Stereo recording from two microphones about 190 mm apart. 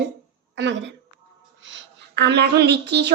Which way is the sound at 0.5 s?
70° right (ahead or behind).